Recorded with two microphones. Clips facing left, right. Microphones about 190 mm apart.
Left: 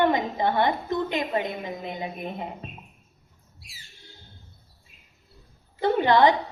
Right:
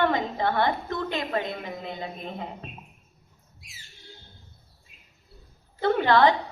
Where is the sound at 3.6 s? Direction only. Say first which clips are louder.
Left 1 dB; 35° left (ahead or behind).